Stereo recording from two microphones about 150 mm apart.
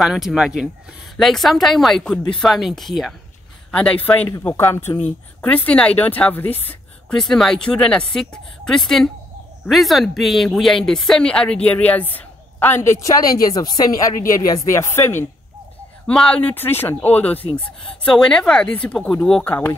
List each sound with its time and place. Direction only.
0.0 s speech: centre (ahead or behind); by 15.2 s 15° left (ahead or behind)
16.1 s speech: 5° left (ahead or behind)